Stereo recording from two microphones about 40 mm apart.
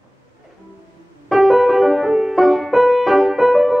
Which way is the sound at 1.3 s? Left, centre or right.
Centre.